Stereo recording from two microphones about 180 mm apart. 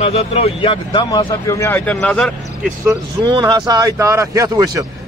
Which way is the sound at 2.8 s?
20° right (ahead or behind).